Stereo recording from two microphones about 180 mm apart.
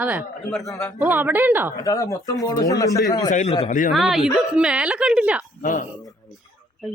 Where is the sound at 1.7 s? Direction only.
20° left (ahead or behind).